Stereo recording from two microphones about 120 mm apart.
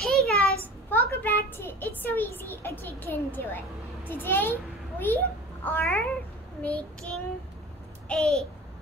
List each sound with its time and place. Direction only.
0.0 s a sound: 5° left (ahead or behind)
0.8 s a child's voice: 15° left (ahead or behind)
6.6 s child singing: 10° left (ahead or behind)
8.1 s a child's voice: 5° left (ahead or behind)